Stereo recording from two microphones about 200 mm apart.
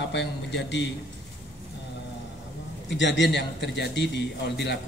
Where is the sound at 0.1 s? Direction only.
60° left (ahead or behind).